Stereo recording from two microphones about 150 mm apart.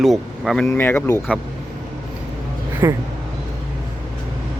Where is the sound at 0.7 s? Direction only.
15° left (ahead or behind).